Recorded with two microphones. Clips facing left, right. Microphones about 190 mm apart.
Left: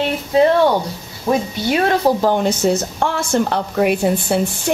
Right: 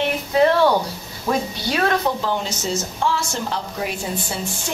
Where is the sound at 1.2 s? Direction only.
25° left (ahead or behind).